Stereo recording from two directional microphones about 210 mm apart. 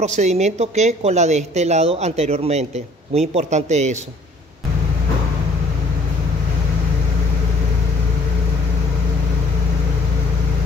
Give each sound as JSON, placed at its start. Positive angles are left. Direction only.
{"t": 0.0, "sound": "a woman's voice", "side_deg": -35}